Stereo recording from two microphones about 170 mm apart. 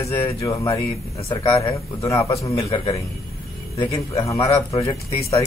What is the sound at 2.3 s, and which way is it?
Speech, 20° left (ahead or behind).